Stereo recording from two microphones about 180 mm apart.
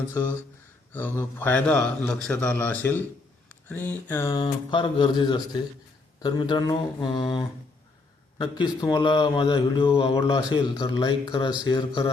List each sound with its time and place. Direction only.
0.1 s a man's voice: 15° left (ahead or behind)
10.2 s speech: 20° left (ahead or behind)